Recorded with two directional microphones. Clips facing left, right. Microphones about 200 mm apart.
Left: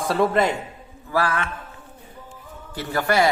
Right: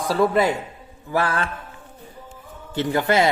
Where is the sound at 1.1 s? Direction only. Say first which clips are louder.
Right 1 dB; 30° right (ahead or behind).